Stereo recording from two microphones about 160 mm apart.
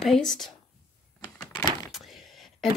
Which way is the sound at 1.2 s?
25° left (ahead or behind).